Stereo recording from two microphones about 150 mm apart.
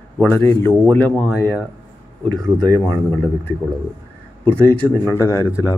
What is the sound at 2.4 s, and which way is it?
Speech, 25° right (ahead or behind).